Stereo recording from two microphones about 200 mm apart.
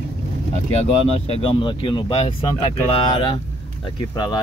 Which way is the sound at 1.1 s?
30° left (ahead or behind).